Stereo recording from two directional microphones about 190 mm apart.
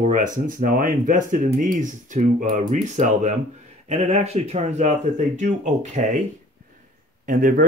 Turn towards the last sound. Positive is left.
turn(degrees=-45)  # may be behind; listen again after turning